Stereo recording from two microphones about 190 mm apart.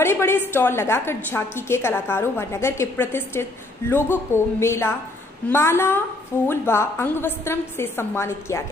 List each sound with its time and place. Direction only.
0.0 s a woman's voice: 10° left (ahead or behind)